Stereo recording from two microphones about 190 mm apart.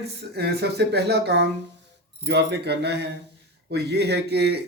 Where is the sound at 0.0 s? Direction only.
60° right (ahead or behind).